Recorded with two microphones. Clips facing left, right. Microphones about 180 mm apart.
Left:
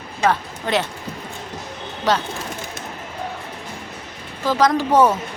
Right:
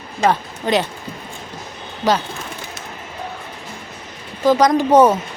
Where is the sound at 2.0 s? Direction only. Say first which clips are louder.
Right 2 dB; 10° right (ahead or behind).